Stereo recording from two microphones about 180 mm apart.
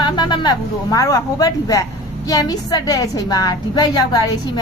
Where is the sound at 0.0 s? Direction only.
25° left (ahead or behind).